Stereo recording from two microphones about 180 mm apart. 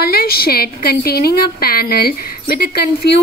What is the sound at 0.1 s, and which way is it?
A woman's voice, 60° left (ahead or behind).